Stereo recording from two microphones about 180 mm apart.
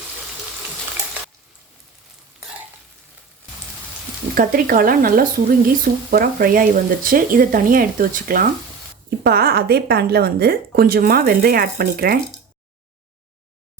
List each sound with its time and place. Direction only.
4.4 s a woman's voice: 50° right (ahead or behind)